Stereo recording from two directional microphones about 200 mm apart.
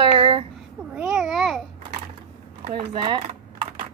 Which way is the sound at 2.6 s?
25° right (ahead or behind).